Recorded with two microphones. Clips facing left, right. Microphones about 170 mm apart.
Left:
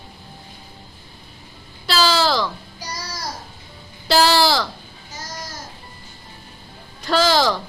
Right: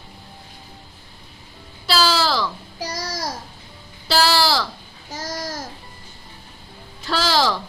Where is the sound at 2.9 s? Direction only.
90° right.